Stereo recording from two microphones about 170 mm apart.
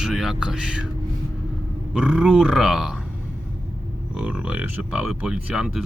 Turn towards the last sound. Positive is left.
turn(degrees=-5)  # may be behind; listen again after turning